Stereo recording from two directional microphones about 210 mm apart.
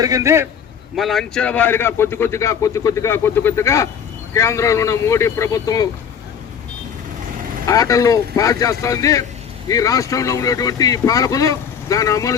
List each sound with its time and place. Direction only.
0.0 s a man's voice: 15° right (ahead or behind)
0.9 s a man's voice: centre (ahead or behind); by 5.9 s 15° left (ahead or behind)
7.7 s a man's voice: 15° left (ahead or behind)